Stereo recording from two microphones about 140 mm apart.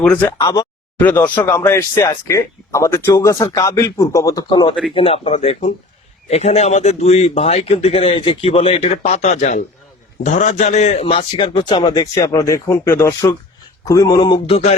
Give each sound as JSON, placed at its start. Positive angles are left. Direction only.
{"t": 0.0, "sound": "speech", "side_deg": 10}
{"t": 0.3, "sound": "speech", "side_deg": 25}
{"t": 0.9, "sound": "speech", "side_deg": 15}
{"t": 4.4, "sound": "a man's voice", "side_deg": 35}
{"t": 14.2, "sound": "a man's voice", "side_deg": 35}